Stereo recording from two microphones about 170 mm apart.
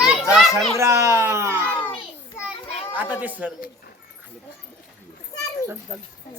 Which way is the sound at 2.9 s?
10° right (ahead or behind).